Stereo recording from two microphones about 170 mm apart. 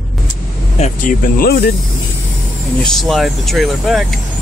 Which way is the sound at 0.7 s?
40° left (ahead or behind).